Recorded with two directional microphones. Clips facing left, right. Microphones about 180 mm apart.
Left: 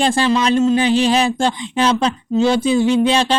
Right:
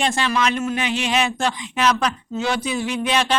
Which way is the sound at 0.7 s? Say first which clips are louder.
Left 8 dB; 35° left (ahead or behind).